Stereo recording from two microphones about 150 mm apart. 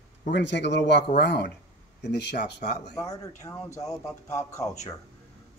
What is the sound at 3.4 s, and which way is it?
Speech, 20° left (ahead or behind).